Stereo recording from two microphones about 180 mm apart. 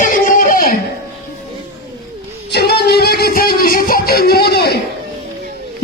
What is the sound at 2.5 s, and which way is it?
Music, 65° left (ahead or behind).